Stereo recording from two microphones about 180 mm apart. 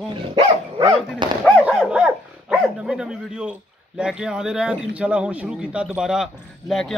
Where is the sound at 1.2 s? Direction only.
25° right (ahead or behind).